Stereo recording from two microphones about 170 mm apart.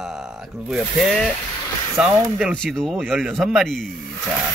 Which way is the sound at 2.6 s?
Centre (ahead or behind).